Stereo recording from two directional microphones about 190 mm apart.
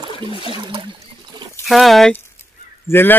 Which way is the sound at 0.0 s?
25° right (ahead or behind).